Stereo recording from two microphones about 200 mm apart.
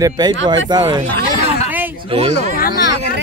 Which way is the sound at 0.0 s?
20° right (ahead or behind).